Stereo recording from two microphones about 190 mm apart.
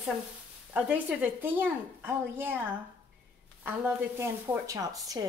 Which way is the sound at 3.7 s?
10° right (ahead or behind).